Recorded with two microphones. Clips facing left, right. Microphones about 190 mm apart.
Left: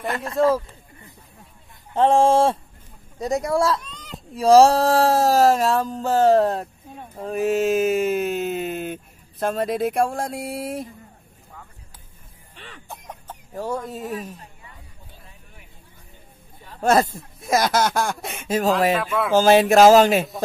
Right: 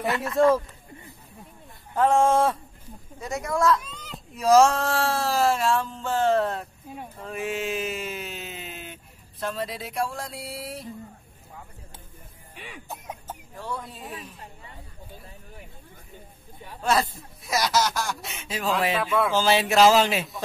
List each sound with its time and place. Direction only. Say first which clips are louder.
0.0 s a sound: even; 40° left (ahead or behind)
2.0 s speech: left 4 dB; 30° left (ahead or behind)
3.2 s a sound: left 5 dB; 35° left (ahead or behind)
3.8 s a sound: left 2 dB; 5° right (ahead or behind)
4.4 s a sound: left 5 dB; 35° left (ahead or behind)
7.2 s speech: left 10 dB; 40° left (ahead or behind)
12.5 s cough: right 1 dB; 10° right (ahead or behind)
12.8 s chicken: even; 5° right (ahead or behind)
13.6 s speech: left 9 dB; 45° left (ahead or behind)
16.8 s speech: left 6 dB; 45° left (ahead or behind)
18.9 s speech: left 1 dB; centre (ahead or behind)
19.3 s speech: left 9 dB; 45° left (ahead or behind)